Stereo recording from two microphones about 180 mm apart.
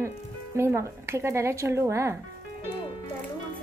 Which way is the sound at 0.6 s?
15° right (ahead or behind).